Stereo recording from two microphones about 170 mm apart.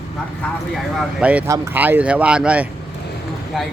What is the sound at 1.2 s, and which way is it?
Speech, 5° right (ahead or behind).